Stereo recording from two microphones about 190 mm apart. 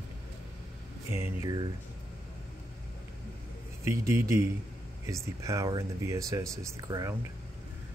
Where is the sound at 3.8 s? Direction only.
15° right (ahead or behind).